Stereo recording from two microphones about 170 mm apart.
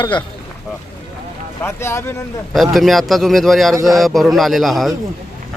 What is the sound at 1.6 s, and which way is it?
Speech, 15° left (ahead or behind).